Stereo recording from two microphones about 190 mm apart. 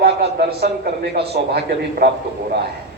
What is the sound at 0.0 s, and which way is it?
Speech, 55° right (ahead or behind).